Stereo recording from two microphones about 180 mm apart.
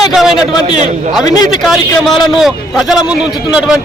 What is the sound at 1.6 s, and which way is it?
Speech, centre (ahead or behind).